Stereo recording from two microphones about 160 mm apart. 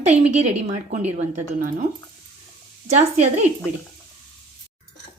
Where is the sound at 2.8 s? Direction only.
45° right (ahead or behind).